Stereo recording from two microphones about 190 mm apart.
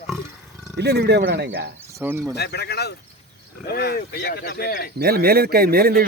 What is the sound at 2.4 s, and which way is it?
Speech, 60° left (ahead or behind).